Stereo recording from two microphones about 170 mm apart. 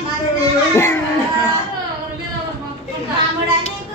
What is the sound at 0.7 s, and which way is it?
Speech, 15° left (ahead or behind).